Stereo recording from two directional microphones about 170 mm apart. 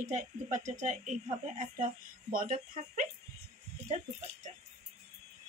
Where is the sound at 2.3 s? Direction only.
55° right (ahead or behind).